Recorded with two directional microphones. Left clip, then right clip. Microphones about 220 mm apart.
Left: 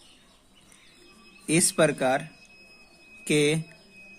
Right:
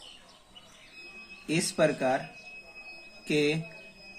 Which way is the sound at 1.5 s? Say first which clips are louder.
Left 4 dB; 50° left (ahead or behind).